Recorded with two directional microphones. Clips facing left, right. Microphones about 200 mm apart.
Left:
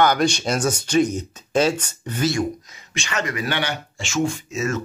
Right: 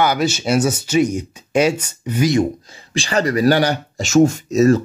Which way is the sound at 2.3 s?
30° right (ahead or behind).